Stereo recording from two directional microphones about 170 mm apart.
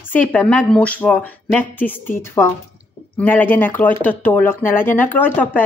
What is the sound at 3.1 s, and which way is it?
A woman's voice, 10° left (ahead or behind).